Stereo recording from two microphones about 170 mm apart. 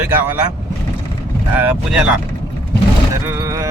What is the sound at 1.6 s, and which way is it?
Speech, 10° right (ahead or behind).